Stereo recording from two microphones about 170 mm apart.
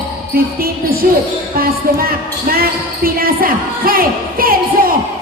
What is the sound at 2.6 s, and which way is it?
A woman's voice, 60° right (ahead or behind).